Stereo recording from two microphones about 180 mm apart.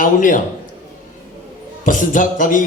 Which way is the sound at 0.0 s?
50° left (ahead or behind).